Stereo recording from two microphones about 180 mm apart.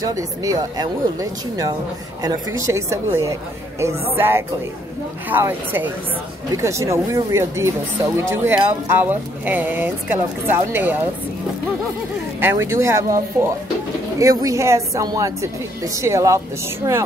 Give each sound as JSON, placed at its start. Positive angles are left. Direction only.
{"t": 0.0, "sound": "speech", "side_deg": -20}
{"t": 12.4, "sound": "speech", "side_deg": -15}